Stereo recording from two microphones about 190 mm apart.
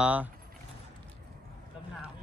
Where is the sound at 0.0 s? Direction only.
10° right (ahead or behind).